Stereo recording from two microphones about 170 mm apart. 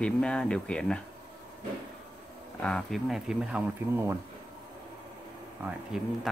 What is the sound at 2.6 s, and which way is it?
Speech, 5° left (ahead or behind).